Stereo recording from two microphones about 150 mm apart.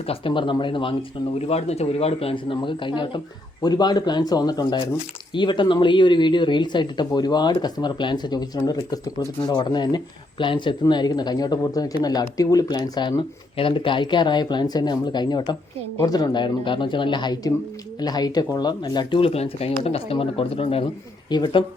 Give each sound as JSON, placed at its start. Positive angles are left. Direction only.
{"t": 0.0, "sound": "speech", "side_deg": 40}